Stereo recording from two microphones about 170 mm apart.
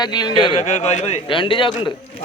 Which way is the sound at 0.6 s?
40° left (ahead or behind).